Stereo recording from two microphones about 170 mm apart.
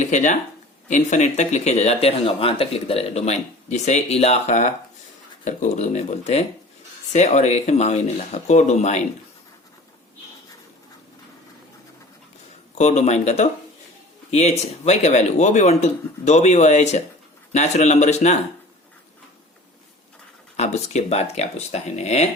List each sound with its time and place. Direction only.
0.0 s speech: 45° left (ahead or behind)
12.7 s speech: 40° left (ahead or behind)
20.6 s speech: 40° left (ahead or behind)